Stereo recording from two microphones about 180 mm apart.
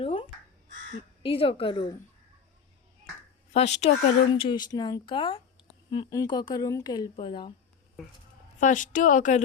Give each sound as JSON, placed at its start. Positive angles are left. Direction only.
{"t": 0.0, "sound": "crow", "side_deg": 30}
{"t": 1.2, "sound": "a woman's voice", "side_deg": 30}
{"t": 3.5, "sound": "a woman's voice", "side_deg": 35}
{"t": 8.6, "sound": "a woman's voice", "side_deg": 45}